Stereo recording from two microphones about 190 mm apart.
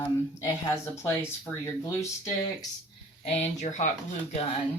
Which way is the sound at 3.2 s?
35° left (ahead or behind).